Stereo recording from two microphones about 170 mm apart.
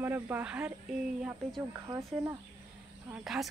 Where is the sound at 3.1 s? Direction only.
5° right (ahead or behind).